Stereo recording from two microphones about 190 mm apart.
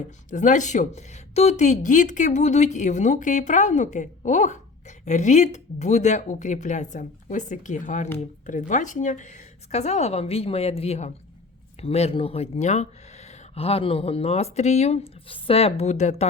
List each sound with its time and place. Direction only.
0.3 s speech: 40° left (ahead or behind)